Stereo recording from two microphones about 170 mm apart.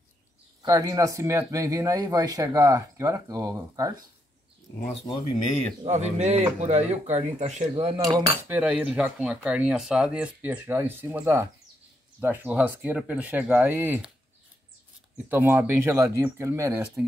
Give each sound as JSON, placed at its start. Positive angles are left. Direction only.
{"t": 0.6, "sound": "speech", "side_deg": -20}
{"t": 5.9, "sound": "speech", "side_deg": -40}
{"t": 8.0, "sound": "speech", "side_deg": -30}
{"t": 8.4, "sound": "speech", "side_deg": -10}
{"t": 15.2, "sound": "speech", "side_deg": -10}